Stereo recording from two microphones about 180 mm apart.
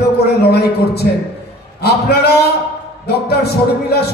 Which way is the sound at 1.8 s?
60° left (ahead or behind).